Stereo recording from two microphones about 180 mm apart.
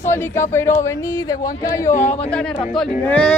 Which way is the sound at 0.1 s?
15° left (ahead or behind).